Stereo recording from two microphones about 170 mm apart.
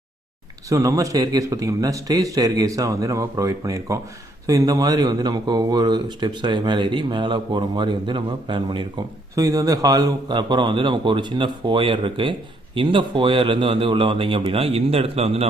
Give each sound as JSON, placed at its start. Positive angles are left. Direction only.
{"t": 0.7, "sound": "a man's voice", "side_deg": -20}